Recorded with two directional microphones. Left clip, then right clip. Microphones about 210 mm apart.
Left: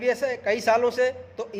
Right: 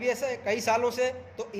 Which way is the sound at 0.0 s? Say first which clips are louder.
Left 4 dB; 25° left (ahead or behind).